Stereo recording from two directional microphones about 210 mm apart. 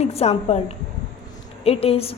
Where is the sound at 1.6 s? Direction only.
30° left (ahead or behind).